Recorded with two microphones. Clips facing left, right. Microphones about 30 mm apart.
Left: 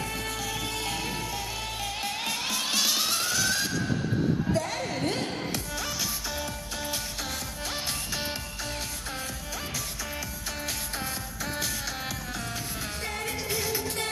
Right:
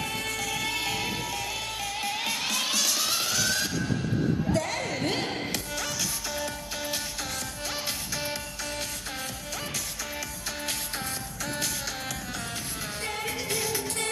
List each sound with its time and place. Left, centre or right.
0.0 s music: centre
0.3 s music: centre
0.7 s music: centre
1.3 s music: centre
2.7 s music: centre
3.1 s music: centre
6.3 s music: centre
11.4 s music: centre
13.0 s music: centre